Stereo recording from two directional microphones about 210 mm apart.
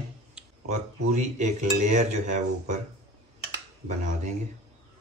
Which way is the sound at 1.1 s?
35° right (ahead or behind).